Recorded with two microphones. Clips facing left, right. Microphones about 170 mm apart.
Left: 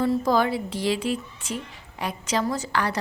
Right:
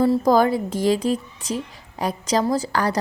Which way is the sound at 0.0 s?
40° right (ahead or behind).